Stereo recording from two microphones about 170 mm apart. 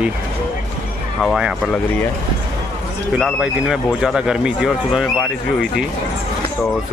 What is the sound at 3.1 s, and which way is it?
Speech, 5° right (ahead or behind).